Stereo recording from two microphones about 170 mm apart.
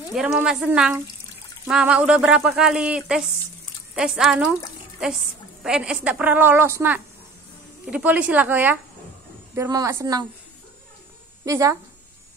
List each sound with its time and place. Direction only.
0.1 s speech: 5° right (ahead or behind)
5.6 s a woman's voice: 5° right (ahead or behind)
11.4 s a woman's voice: 20° right (ahead or behind)